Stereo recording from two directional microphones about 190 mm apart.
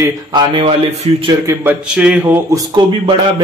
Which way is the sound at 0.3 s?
25° right (ahead or behind).